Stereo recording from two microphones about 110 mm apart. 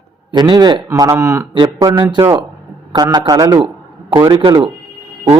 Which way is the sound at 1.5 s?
45° right (ahead or behind).